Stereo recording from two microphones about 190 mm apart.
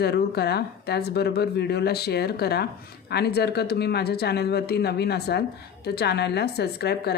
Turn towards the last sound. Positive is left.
turn(degrees=60)  # may be behind; listen again after turning